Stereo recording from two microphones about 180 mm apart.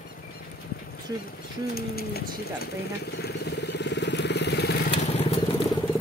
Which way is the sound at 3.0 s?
65° left (ahead or behind).